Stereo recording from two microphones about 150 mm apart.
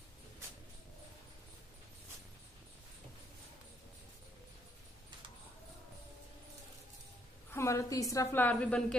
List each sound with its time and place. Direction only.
7.5 s a woman's voice: 20° left (ahead or behind)